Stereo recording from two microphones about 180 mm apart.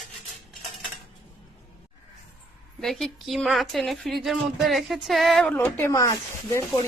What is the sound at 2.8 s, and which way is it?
A woman's voice, centre (ahead or behind).